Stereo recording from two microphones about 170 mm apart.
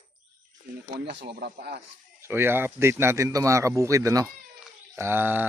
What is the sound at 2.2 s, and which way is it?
Speech, 15° right (ahead or behind).